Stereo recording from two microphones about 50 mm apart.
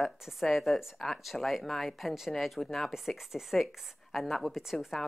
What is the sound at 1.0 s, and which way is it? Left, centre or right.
A woman's voice, centre.